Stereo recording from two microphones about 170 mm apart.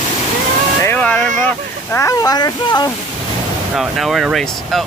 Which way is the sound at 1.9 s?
20° left (ahead or behind).